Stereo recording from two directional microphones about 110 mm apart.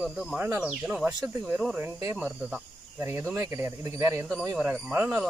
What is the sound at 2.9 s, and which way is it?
A man's voice, 20° right (ahead or behind).